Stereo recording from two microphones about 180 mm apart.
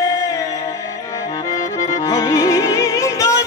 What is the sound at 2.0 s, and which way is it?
Music, 20° left (ahead or behind).